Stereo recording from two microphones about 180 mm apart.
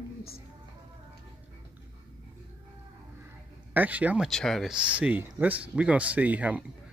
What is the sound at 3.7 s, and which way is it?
Speech, 10° right (ahead or behind).